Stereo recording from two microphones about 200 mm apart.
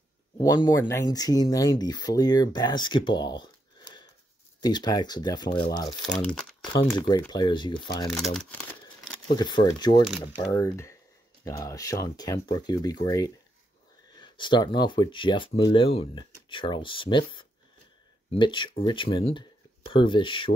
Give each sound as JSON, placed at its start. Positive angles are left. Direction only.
{"t": 0.4, "sound": "speech", "side_deg": 20}
{"t": 6.0, "sound": "speech", "side_deg": 5}
{"t": 6.6, "sound": "speech", "side_deg": 25}
{"t": 8.1, "sound": "speech", "side_deg": 0}
{"t": 9.3, "sound": "speech", "side_deg": 20}